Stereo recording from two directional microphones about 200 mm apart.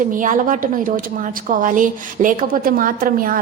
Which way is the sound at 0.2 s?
40° right (ahead or behind).